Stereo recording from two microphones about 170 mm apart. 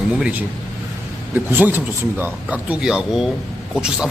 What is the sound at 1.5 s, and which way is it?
A man's voice, 10° right (ahead or behind).